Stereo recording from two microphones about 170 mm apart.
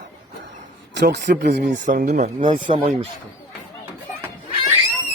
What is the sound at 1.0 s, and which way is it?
Speech, 85° right.